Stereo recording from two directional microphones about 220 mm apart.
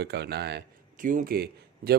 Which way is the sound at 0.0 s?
50° right (ahead or behind).